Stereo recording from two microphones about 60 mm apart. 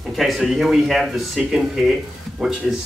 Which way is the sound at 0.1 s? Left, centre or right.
Centre.